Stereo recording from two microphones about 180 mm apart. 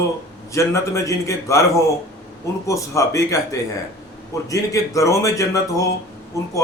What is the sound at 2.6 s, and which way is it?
Speech, 15° left (ahead or behind).